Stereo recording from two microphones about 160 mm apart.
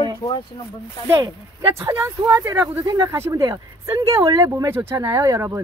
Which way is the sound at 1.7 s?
15° right (ahead or behind).